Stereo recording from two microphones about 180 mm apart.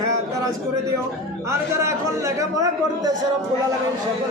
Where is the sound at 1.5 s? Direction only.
15° right (ahead or behind).